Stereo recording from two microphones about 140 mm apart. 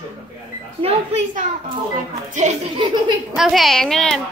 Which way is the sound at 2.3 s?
55° right (ahead or behind).